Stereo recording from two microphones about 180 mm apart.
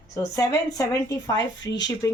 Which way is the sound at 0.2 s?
20° left (ahead or behind).